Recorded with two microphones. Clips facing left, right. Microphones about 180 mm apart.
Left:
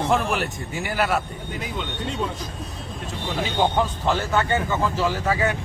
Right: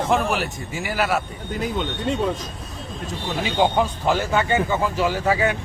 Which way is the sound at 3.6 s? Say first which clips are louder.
Right 2 dB; 10° right (ahead or behind).